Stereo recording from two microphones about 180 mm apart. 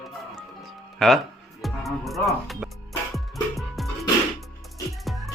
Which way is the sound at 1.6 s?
Centre (ahead or behind).